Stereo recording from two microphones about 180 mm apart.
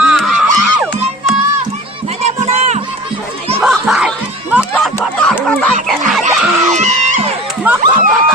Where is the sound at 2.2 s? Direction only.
40° right (ahead or behind).